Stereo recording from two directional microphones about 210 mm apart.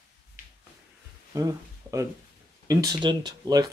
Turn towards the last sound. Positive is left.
turn(degrees=-20)  # may be behind; listen again after turning